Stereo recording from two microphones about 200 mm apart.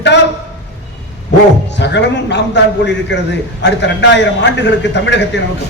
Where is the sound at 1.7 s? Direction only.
60° left (ahead or behind).